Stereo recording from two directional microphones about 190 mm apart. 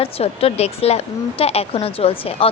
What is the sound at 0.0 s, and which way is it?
A woman's voice, 30° left (ahead or behind).